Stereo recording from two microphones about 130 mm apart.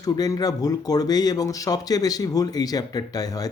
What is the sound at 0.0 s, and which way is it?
Speech, 30° left (ahead or behind).